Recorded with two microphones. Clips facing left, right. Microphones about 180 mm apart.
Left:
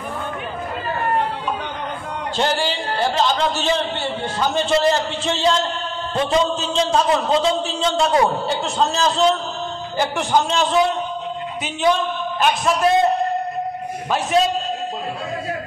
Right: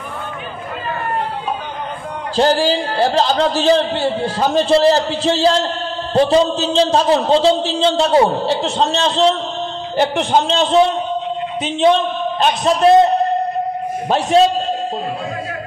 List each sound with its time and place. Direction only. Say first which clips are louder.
2.3 s a man's voice: right 7 dB; 35° right (ahead or behind)
14.0 s a man's voice: right 4 dB; 30° right (ahead or behind)